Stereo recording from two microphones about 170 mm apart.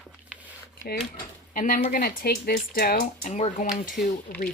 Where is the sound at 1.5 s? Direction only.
50° left (ahead or behind).